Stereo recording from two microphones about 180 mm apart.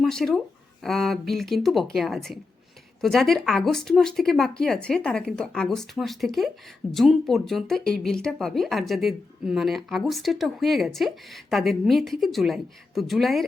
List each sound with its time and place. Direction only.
0.0 s speech: centre (ahead or behind)